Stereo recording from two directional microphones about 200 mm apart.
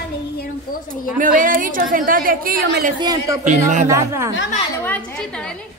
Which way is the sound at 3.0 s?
15° right (ahead or behind).